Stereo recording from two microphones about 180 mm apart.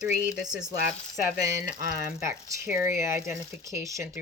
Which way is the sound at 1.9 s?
15° right (ahead or behind).